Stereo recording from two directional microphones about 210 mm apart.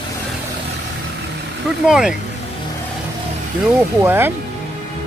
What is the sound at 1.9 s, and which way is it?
Speech, 5° right (ahead or behind).